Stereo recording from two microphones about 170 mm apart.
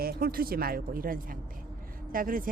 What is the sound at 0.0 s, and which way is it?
Speech, 60° right (ahead or behind).